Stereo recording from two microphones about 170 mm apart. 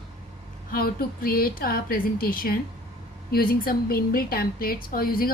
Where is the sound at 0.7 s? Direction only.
60° left (ahead or behind).